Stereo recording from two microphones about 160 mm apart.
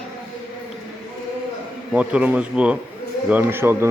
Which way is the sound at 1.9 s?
10° right (ahead or behind).